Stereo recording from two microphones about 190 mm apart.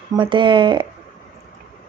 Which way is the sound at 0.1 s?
25° right (ahead or behind).